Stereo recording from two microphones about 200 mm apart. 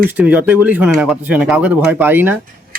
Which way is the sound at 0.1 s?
10° right (ahead or behind).